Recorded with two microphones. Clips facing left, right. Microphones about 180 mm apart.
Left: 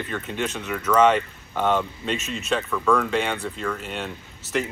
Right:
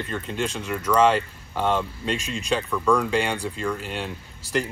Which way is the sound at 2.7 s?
15° right (ahead or behind).